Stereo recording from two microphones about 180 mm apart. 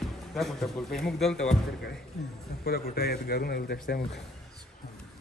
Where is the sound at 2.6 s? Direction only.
55° left (ahead or behind).